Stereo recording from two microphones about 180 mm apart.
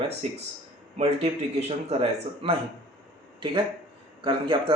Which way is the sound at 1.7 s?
35° right (ahead or behind).